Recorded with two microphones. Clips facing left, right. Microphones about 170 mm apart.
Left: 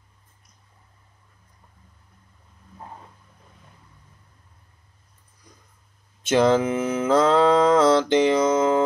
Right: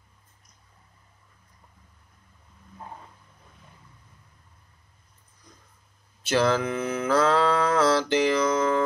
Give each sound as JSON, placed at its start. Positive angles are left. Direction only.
{"t": 6.2, "sound": "mantra", "side_deg": 20}